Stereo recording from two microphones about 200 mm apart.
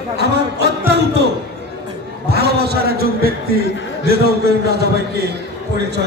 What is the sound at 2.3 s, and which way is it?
A man's voice, 50° right (ahead or behind).